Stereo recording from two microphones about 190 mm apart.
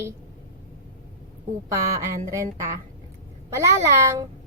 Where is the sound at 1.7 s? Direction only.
15° right (ahead or behind).